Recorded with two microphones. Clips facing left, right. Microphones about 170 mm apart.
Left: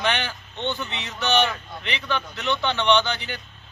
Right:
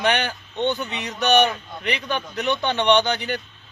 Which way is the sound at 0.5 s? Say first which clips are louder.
Right 5 dB; 15° right (ahead or behind).